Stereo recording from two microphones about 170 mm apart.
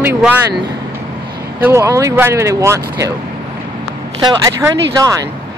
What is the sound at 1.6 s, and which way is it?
Speech, 15° right (ahead or behind).